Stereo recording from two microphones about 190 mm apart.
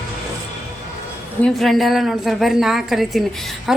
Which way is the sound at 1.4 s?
Centre (ahead or behind).